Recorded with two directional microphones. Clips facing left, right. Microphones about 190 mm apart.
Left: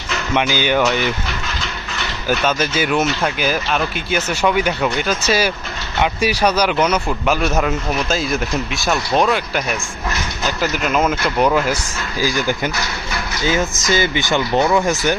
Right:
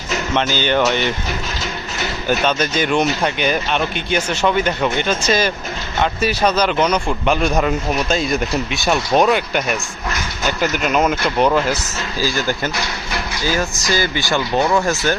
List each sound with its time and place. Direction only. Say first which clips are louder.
0.3 s speech: left 1 dB; 10° left (ahead or behind)
2.2 s a man's voice: even; 5° left (ahead or behind)
12.2 s speech: left 1 dB; 15° left (ahead or behind)